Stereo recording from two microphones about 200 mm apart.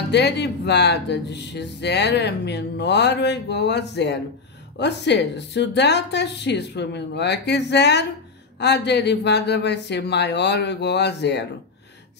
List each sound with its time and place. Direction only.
0.1 s speech: 60° left (ahead or behind)